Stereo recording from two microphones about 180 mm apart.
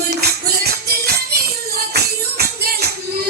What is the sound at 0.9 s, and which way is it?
Music, 60° right (ahead or behind).